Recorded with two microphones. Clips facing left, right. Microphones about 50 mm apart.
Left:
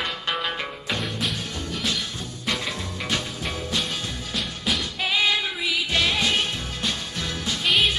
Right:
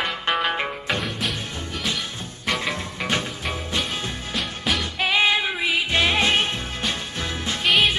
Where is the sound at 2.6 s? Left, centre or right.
Right.